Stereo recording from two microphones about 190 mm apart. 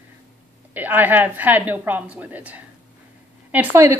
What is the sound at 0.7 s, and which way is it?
A woman's voice, 10° right (ahead or behind).